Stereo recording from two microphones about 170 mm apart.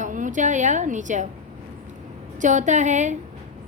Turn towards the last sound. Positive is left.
turn(degrees=-45)  # may be behind; listen again after turning